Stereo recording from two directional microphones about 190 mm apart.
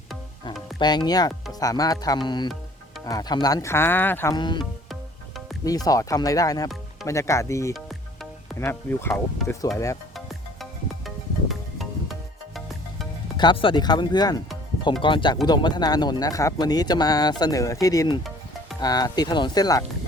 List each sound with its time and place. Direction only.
0.8 s speech: 20° left (ahead or behind)
4.4 s speech: 25° left (ahead or behind)
5.6 s speech: 20° left (ahead or behind)
7.7 s music: centre (ahead or behind)
8.5 s speech: 15° left (ahead or behind)
10.2 s music: centre (ahead or behind)
13.3 s speech: 25° left (ahead or behind)